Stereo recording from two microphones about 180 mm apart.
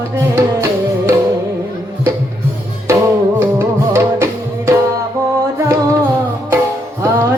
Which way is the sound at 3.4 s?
10° right (ahead or behind).